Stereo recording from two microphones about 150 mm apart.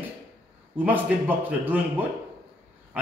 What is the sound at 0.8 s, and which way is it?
Speech, 10° right (ahead or behind).